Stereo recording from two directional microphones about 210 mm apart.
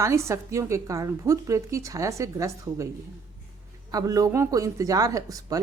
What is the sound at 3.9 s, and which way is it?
A woman's voice, 15° right (ahead or behind).